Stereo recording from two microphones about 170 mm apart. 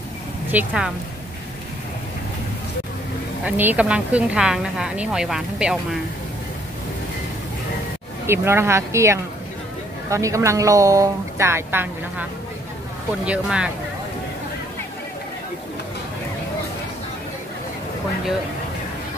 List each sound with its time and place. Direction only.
0.5 s speech: 5° right (ahead or behind)
3.4 s speech: 10° right (ahead or behind)
8.3 s speech: 15° right (ahead or behind)